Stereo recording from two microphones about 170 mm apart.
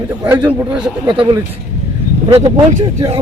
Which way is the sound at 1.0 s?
30° right (ahead or behind).